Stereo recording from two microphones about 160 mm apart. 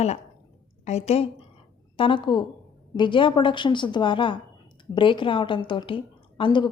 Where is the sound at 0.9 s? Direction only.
40° left (ahead or behind).